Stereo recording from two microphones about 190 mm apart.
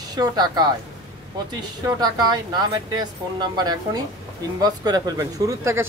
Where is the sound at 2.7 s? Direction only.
20° right (ahead or behind).